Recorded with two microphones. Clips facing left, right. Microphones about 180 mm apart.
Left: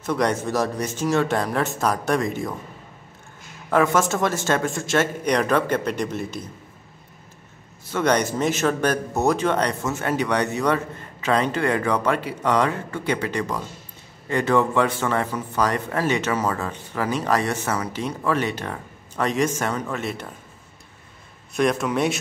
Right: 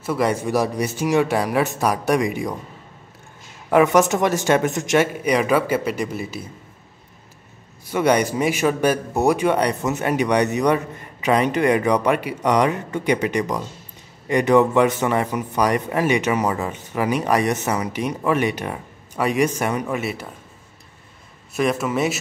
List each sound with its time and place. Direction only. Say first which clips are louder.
0.0 s a man's voice: right 1 dB; 5° right (ahead or behind)
3.7 s a man's voice: right 4 dB; 15° right (ahead or behind)
7.8 s a man's voice: right 3 dB; 10° right (ahead or behind)
21.5 s speech: even; 5° right (ahead or behind)